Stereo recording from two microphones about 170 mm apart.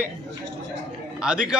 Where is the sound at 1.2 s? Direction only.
5° right (ahead or behind).